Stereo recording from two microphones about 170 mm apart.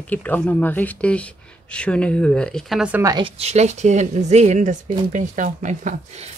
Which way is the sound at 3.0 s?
20° right (ahead or behind).